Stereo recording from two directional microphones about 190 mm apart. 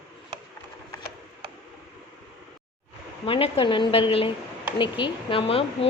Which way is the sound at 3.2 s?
30° left (ahead or behind).